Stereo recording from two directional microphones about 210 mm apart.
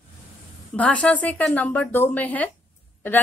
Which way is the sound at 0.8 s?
5° left (ahead or behind).